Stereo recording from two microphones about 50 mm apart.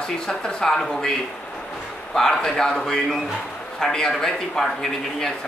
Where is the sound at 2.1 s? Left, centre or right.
Centre.